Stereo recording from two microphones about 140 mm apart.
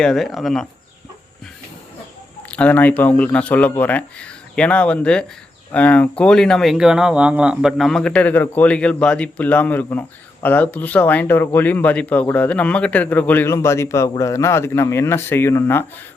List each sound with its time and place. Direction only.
0.0 s speech: 5° left (ahead or behind)
2.5 s speech: 10° left (ahead or behind)